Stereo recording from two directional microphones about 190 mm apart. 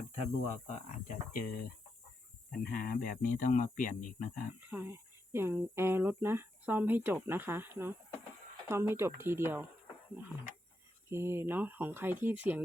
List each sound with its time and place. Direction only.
0.8 s speech: 45° left (ahead or behind)
4.7 s speech: 10° right (ahead or behind)
11.1 s speech: 15° right (ahead or behind)